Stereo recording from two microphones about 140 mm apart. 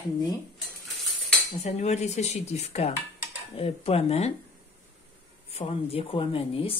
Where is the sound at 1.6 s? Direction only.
50° left (ahead or behind).